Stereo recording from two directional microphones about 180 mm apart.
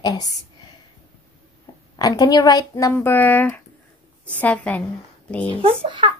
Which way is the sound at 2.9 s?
10° left (ahead or behind).